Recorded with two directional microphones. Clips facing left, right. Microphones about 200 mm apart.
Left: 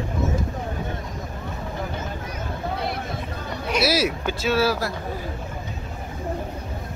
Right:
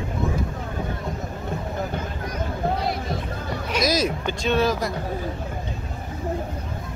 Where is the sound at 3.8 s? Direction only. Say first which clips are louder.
Even; 10° left (ahead or behind).